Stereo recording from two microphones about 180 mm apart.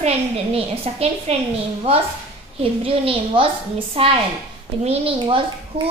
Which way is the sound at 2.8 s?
30° right (ahead or behind).